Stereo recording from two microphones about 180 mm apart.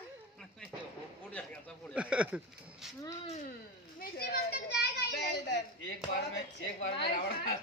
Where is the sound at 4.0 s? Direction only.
60° left (ahead or behind).